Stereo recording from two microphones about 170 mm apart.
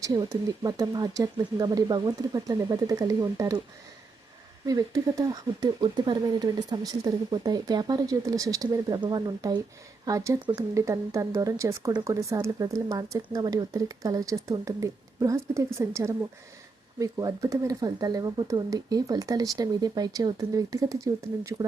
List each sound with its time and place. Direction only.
0.0 s speech: 20° right (ahead or behind)
4.6 s speech: 20° right (ahead or behind)